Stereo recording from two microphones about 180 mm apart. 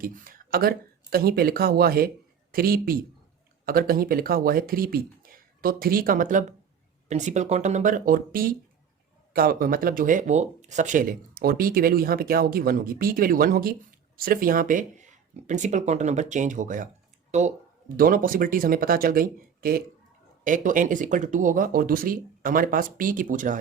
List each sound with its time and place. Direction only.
0.0 s speech: 50° right (ahead or behind)
17.9 s speech: 50° right (ahead or behind)